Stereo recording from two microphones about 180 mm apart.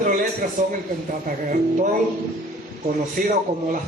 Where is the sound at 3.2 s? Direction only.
45° right (ahead or behind).